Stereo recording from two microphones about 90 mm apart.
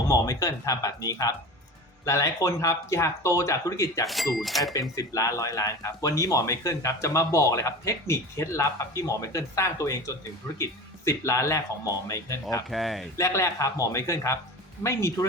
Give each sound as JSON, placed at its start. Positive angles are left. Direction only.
{"t": 0.1, "sound": "speech", "side_deg": 35}
{"t": 4.0, "sound": "speech", "side_deg": 0}
{"t": 4.7, "sound": "speech", "side_deg": 40}
{"t": 12.7, "sound": "speech", "side_deg": 0}
{"t": 13.1, "sound": "speech", "side_deg": 35}